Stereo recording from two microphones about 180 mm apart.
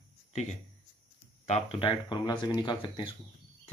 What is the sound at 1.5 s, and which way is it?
Speech, 35° left (ahead or behind).